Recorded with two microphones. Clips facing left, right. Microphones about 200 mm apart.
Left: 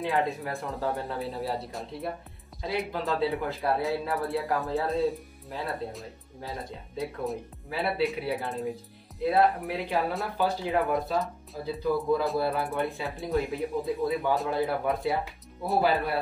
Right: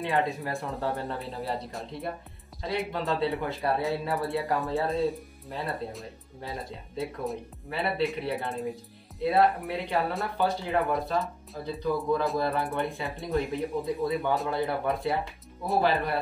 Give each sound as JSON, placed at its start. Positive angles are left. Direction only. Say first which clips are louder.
{"t": 0.0, "sound": "speech", "louder": "even", "side_deg": 0}